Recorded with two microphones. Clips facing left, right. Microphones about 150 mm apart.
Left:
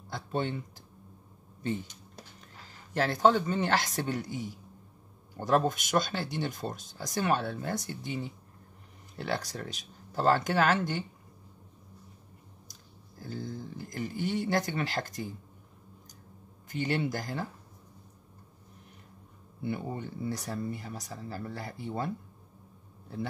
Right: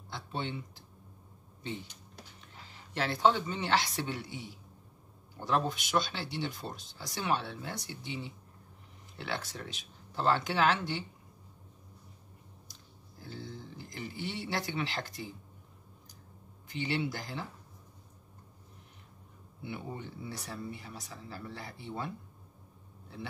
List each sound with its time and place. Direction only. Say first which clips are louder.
0.1 s a sound: left 5 dB; 45° left (ahead or behind)
2.9 s speech: left 3 dB; 45° left (ahead or behind)
13.2 s speech: left 6 dB; 45° left (ahead or behind)
16.6 s speech: left 3 dB; 45° left (ahead or behind)
19.6 s speech: left 6 dB; 45° left (ahead or behind)